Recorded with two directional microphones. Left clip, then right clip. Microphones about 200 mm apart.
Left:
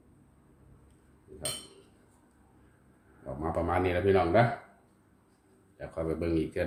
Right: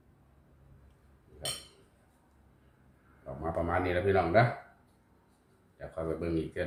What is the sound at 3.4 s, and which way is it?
Speech, 30° left (ahead or behind).